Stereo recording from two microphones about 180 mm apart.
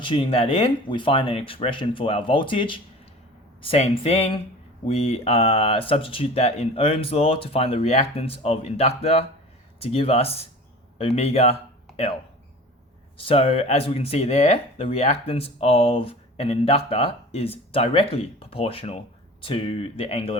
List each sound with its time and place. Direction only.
0.0 s speech: 30° left (ahead or behind)
13.1 s speech: 30° left (ahead or behind)